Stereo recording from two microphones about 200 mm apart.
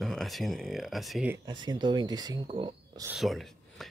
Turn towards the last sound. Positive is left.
turn(degrees=0)  # may be behind; listen again after turning